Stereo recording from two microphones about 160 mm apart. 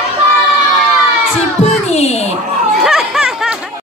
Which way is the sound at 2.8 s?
5° right (ahead or behind).